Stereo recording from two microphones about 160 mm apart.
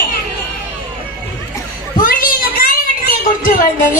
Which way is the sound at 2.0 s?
60° left (ahead or behind).